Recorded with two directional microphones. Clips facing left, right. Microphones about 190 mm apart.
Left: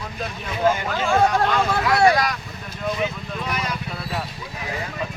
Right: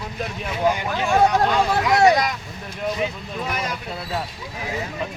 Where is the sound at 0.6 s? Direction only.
15° right (ahead or behind).